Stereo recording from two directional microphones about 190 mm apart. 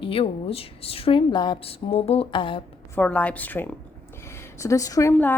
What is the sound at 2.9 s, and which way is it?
A woman's voice, 10° left (ahead or behind).